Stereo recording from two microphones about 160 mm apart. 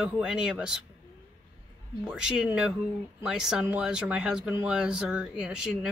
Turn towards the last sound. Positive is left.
turn(degrees=-5)  # may be behind; listen again after turning